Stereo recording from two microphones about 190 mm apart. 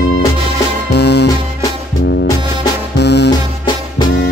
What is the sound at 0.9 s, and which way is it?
Music, 60° left (ahead or behind).